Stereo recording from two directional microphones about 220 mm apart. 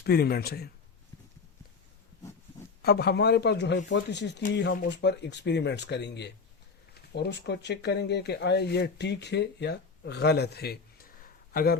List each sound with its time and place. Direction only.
0.0 s speech: 45° left (ahead or behind)
2.8 s speech: 45° left (ahead or behind)